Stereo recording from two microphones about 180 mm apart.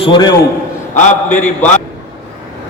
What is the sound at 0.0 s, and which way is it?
Speech, 25° left (ahead or behind).